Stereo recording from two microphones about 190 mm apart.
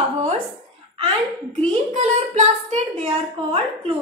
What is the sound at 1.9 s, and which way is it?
Singing, 40° right (ahead or behind).